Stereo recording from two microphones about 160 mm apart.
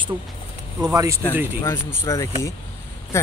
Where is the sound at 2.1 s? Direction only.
20° left (ahead or behind).